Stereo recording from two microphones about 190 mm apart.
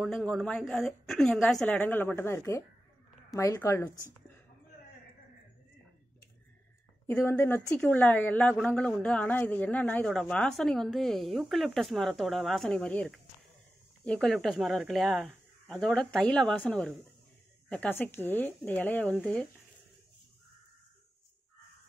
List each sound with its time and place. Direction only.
0.0 s speech: centre (ahead or behind)
7.1 s speech: 10° left (ahead or behind)